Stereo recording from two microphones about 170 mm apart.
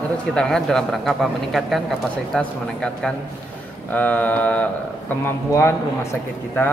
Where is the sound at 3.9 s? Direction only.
10° left (ahead or behind).